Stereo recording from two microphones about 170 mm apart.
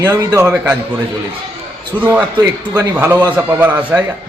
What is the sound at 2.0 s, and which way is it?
Speech, 10° right (ahead or behind).